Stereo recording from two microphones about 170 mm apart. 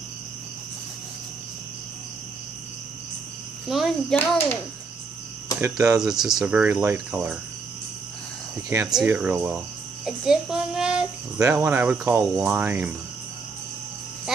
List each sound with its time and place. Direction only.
3.6 s speech: centre (ahead or behind)
5.6 s speech: 15° right (ahead or behind)
5.9 s speech: centre (ahead or behind)
8.9 s a child's voice: 10° right (ahead or behind)